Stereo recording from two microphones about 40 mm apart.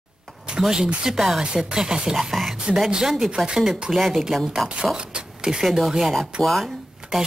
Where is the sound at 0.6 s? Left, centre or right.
Centre.